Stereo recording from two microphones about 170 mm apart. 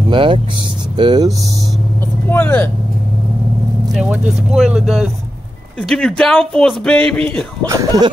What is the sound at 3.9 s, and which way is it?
Speech, 5° right (ahead or behind).